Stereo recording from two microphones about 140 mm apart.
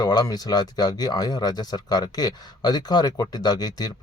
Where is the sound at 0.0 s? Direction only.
30° left (ahead or behind).